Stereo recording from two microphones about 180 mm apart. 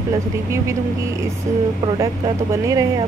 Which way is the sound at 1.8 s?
25° right (ahead or behind).